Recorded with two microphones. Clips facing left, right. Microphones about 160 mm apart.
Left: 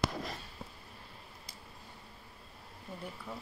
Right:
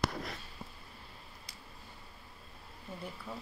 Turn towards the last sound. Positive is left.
turn(degrees=15)  # may be behind; listen again after turning